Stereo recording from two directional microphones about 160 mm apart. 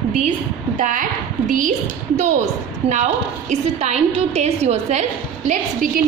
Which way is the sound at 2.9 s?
45° right (ahead or behind).